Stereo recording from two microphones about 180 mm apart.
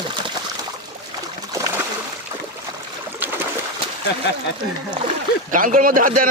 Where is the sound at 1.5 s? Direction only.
20° right (ahead or behind).